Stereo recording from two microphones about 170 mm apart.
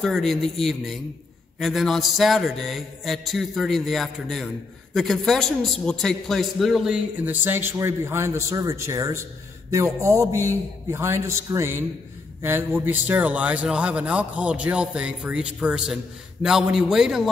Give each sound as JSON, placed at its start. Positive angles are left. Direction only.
{"t": 0.0, "sound": "mantra", "side_deg": 0}
{"t": 4.9, "sound": "a man's voice", "side_deg": 0}
{"t": 16.4, "sound": "mantra", "side_deg": 0}